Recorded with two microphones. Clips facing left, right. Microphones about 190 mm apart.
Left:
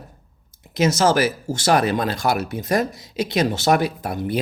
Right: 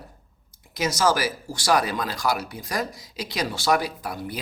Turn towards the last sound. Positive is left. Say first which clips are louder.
# left 7 dB
turn(degrees=25)  # may be behind; listen again after turning